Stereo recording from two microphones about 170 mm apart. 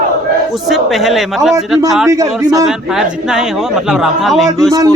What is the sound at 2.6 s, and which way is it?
Speech, 5° right (ahead or behind).